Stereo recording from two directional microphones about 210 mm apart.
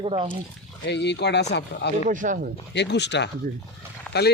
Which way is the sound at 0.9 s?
55° left (ahead or behind).